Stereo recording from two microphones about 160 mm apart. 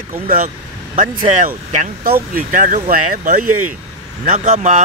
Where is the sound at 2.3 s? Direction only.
55° right (ahead or behind).